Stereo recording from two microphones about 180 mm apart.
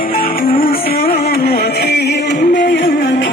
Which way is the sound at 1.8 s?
70° left (ahead or behind).